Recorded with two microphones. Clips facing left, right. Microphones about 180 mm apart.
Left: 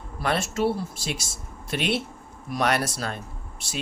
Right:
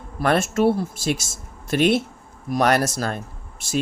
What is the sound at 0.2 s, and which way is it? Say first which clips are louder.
Speech: right 6 dB; 50° right (ahead or behind).